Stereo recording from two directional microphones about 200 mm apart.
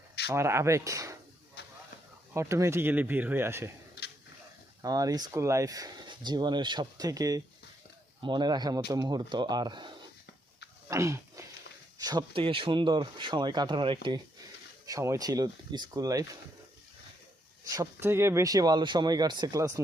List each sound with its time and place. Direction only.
0.3 s speech: 15° right (ahead or behind)
2.3 s speech: 15° right (ahead or behind)
4.8 s speech: 20° right (ahead or behind)
10.8 s a sound: 15° right (ahead or behind)
11.9 s speech: 20° right (ahead or behind)
17.7 s speech: 15° right (ahead or behind)